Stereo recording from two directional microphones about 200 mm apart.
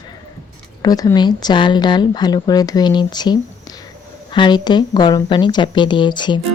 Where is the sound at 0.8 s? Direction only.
20° left (ahead or behind).